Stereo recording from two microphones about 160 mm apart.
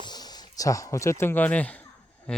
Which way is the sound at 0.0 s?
25° left (ahead or behind).